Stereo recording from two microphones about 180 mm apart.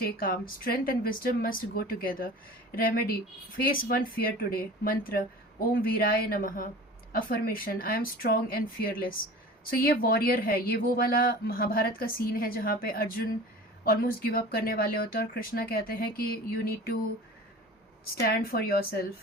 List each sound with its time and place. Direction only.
0.0 s a woman's voice: 55° left (ahead or behind)
18.1 s a woman's voice: 55° left (ahead or behind)